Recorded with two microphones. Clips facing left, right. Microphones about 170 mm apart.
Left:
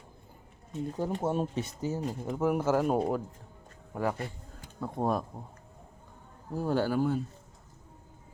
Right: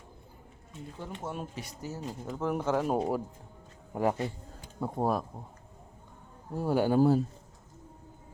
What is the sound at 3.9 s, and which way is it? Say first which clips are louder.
Speech: right 3 dB; 20° right (ahead or behind).